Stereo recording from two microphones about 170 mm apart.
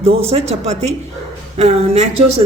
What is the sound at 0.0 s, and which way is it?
Speech, 35° right (ahead or behind).